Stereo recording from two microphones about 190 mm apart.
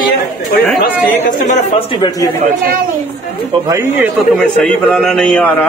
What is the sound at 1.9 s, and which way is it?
Speech, 25° left (ahead or behind).